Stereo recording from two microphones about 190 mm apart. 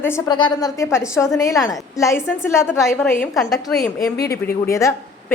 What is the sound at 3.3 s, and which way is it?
Speech, centre (ahead or behind).